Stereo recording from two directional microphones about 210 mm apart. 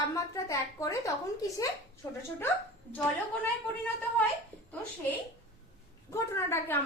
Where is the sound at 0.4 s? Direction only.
15° left (ahead or behind).